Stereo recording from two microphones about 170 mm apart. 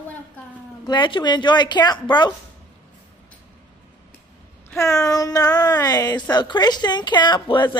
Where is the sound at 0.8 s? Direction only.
30° left (ahead or behind).